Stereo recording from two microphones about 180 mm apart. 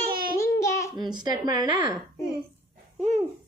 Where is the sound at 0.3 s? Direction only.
15° left (ahead or behind).